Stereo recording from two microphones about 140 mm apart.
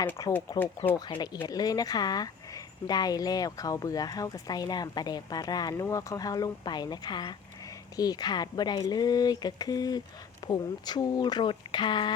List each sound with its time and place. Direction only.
0.2 s speech: 25° left (ahead or behind)